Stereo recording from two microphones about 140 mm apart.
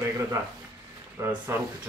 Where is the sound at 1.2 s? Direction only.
15° right (ahead or behind).